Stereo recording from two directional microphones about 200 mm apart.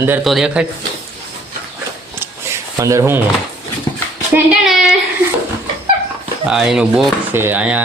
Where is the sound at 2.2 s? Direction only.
15° right (ahead or behind).